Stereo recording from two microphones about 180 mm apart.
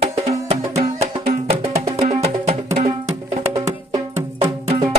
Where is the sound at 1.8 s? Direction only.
35° right (ahead or behind).